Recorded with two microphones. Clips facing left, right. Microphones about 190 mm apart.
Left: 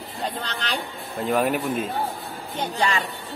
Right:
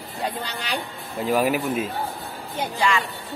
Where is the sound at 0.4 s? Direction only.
10° right (ahead or behind).